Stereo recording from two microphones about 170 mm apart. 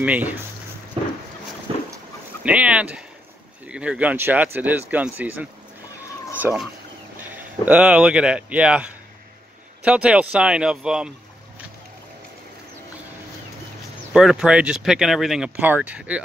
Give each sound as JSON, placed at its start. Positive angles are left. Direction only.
{"t": 0.0, "sound": "speech", "side_deg": -10}
{"t": 1.7, "sound": "dog", "side_deg": -30}
{"t": 2.4, "sound": "speech", "side_deg": -5}
{"t": 14.1, "sound": "speech", "side_deg": -5}